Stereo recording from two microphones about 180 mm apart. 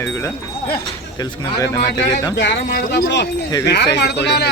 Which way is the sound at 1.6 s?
20° left (ahead or behind).